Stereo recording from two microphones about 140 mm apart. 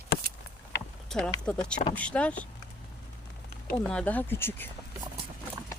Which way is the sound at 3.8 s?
5° left (ahead or behind).